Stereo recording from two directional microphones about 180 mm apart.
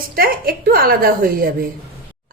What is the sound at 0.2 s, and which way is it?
A woman's voice, 55° right (ahead or behind).